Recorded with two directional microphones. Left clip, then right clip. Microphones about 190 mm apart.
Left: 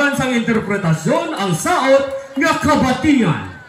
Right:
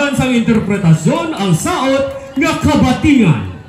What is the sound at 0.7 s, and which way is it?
Speech, 25° left (ahead or behind).